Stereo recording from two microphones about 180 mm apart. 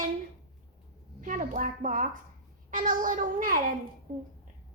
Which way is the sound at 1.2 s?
45° right (ahead or behind).